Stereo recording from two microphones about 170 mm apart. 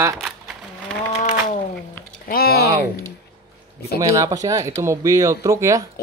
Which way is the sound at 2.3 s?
65° left (ahead or behind).